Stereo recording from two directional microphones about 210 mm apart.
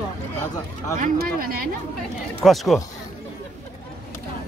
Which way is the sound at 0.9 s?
40° right (ahead or behind).